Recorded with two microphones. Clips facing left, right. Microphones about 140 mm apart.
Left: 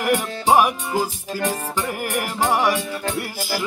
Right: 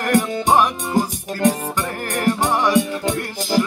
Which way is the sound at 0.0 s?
10° left (ahead or behind).